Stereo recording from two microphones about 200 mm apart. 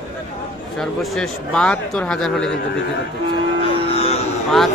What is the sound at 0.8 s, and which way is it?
A man's voice, 5° left (ahead or behind).